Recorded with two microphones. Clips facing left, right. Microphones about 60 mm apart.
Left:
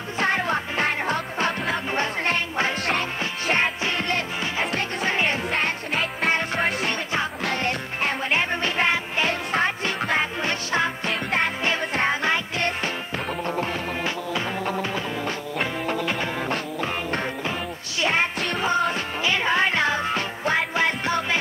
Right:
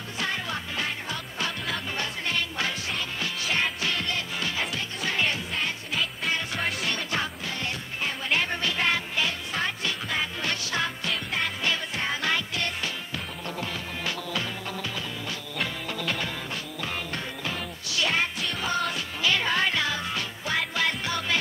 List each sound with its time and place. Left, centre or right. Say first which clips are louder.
0.2 s music: left 8 dB; left
2.9 s music: left 6 dB; left
5.0 s music: left 3 dB; left
5.5 s music: left 6 dB; left
7.4 s music: left 7 dB; left
8.3 s music: left 3 dB; left
10.4 s music: left 5 dB; left
11.1 s music: left 5 dB; left
15.6 s music: left 5 dB; left